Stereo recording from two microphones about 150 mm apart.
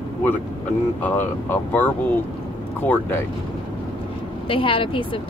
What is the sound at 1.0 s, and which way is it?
Speech, 10° left (ahead or behind).